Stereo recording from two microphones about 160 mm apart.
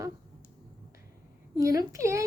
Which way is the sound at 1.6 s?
20° right (ahead or behind).